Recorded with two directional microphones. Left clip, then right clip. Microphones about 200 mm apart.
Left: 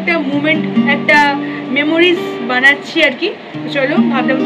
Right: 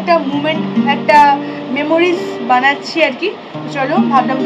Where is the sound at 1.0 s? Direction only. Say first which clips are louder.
Right 3 dB; 15° left (ahead or behind).